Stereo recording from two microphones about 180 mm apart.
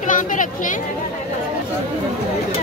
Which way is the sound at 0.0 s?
45° left (ahead or behind).